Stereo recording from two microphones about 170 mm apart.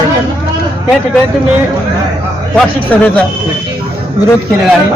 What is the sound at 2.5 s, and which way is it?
Speech, 10° left (ahead or behind).